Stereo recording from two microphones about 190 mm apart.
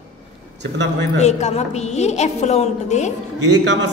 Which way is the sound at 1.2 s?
35° left (ahead or behind).